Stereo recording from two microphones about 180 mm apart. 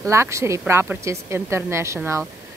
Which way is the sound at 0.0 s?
15° right (ahead or behind).